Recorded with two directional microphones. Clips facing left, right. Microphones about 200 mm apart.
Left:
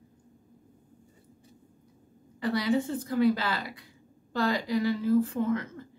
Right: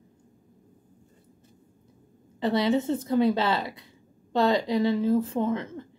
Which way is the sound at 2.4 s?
25° right (ahead or behind).